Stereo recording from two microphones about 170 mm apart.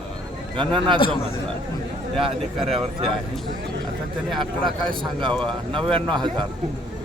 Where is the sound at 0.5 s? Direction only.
30° right (ahead or behind).